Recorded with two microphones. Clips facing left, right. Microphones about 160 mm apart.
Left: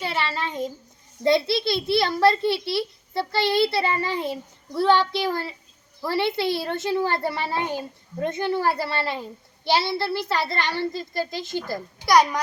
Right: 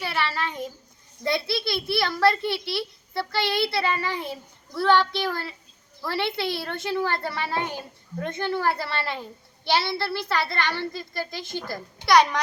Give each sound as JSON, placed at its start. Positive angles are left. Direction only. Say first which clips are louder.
{"t": 0.0, "sound": "a child's voice", "louder": "left 1 dB", "side_deg": 20}